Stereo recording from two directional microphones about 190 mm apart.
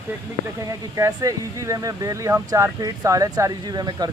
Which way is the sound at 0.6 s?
15° right (ahead or behind).